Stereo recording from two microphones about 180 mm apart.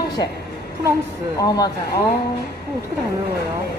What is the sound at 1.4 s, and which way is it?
Speech, 20° left (ahead or behind).